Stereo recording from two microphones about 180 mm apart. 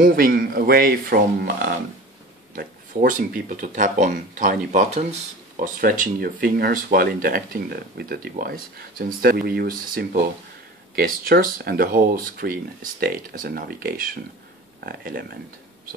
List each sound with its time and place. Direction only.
0.0 s speech: 55° right (ahead or behind)